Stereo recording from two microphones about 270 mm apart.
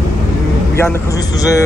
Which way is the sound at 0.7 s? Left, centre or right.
Centre.